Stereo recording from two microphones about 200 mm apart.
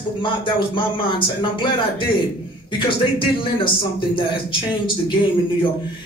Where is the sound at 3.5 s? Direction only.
25° left (ahead or behind).